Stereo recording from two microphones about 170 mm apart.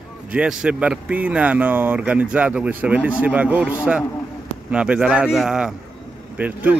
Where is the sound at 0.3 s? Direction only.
5° right (ahead or behind).